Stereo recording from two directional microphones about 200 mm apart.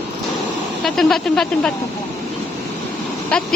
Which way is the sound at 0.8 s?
Centre (ahead or behind).